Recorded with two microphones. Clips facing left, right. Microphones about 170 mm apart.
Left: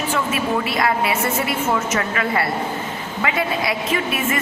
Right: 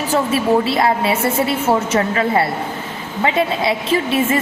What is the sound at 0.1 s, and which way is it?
A woman's voice, 30° right (ahead or behind).